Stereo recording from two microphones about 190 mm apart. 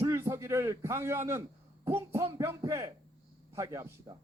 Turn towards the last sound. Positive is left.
turn(degrees=-20)  # may be behind; listen again after turning